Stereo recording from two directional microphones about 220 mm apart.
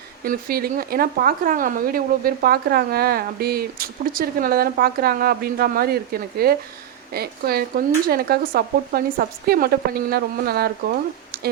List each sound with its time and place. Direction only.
0.3 s speech: 40° right (ahead or behind)